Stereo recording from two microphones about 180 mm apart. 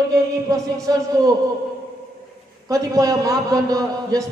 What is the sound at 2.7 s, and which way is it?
A man's voice, 20° right (ahead or behind).